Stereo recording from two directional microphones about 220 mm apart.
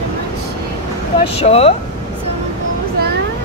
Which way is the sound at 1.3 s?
25° left (ahead or behind).